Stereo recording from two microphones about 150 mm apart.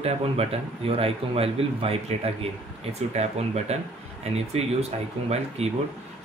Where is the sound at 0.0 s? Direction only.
40° right (ahead or behind).